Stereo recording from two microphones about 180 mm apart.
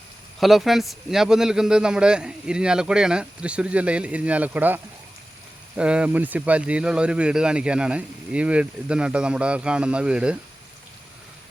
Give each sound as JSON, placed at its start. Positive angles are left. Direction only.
{"t": 0.3, "sound": "speech", "side_deg": 0}